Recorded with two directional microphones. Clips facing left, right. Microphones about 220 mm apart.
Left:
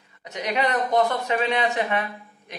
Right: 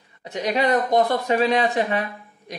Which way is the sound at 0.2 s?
35° right (ahead or behind).